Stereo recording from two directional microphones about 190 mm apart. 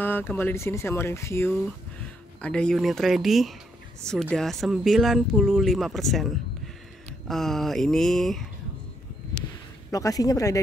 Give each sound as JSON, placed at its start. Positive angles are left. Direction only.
{"t": 0.0, "sound": "speech", "side_deg": 10}
{"t": 7.2, "sound": "speech", "side_deg": 0}
{"t": 9.8, "sound": "speech", "side_deg": 20}